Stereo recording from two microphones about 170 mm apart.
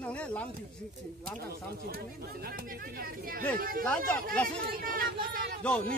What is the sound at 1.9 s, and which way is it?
Speech, 60° right (ahead or behind).